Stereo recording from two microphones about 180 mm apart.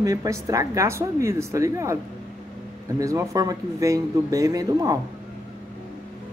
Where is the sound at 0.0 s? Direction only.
20° right (ahead or behind).